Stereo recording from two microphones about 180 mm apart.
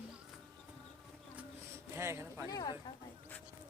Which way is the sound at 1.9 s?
15° right (ahead or behind).